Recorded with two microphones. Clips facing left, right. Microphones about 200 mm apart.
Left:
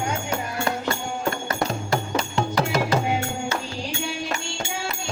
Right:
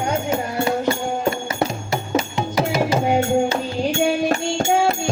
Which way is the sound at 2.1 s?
10° right (ahead or behind).